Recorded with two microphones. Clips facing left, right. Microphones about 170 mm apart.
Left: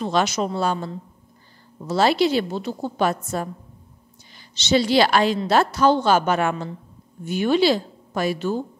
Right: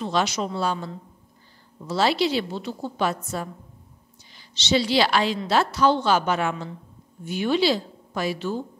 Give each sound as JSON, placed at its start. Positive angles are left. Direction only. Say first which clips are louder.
{"t": 0.0, "sound": "a woman's voice", "louder": "left 3 dB", "side_deg": 50}
{"t": 1.9, "sound": "a woman's voice", "louder": "left 3 dB", "side_deg": 50}